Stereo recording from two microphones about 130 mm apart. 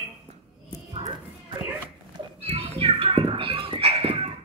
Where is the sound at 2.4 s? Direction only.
50° right (ahead or behind).